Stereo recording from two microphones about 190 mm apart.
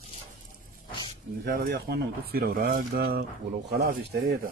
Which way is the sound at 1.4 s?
55° right (ahead or behind).